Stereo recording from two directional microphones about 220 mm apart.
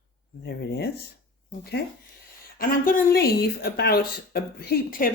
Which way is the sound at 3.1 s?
45° left (ahead or behind).